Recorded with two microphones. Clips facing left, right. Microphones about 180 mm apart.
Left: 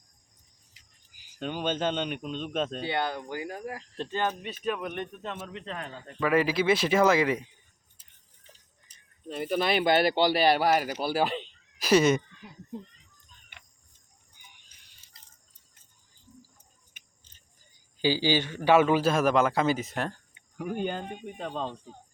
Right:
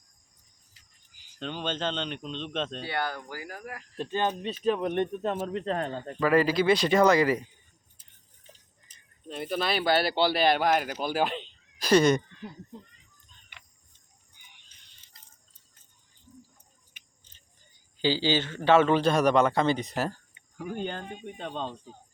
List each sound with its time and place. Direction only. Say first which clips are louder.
1.4 s a man's voice: left 3 dB; 10° left (ahead or behind)
2.8 s speech: left 2 dB; 20° left (ahead or behind)
4.1 s speech: right 2 dB; 20° right (ahead or behind)
4.6 s speech: right 6 dB; 30° right (ahead or behind)
6.1 s speech: right 2 dB; centre (ahead or behind)
8.9 s a man's voice: left 2 dB; 10° left (ahead or behind)
13.5 s cricket: even; 50° left (ahead or behind)
16.9 s a sound: right 1 dB; 50° left (ahead or behind)
18.0 s a man's voice: even; 15° left (ahead or behind)
20.6 s a man's voice: left 2 dB; 10° left (ahead or behind)